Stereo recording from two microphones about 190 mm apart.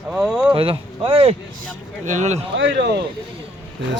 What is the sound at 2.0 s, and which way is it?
Speech, 40° right (ahead or behind).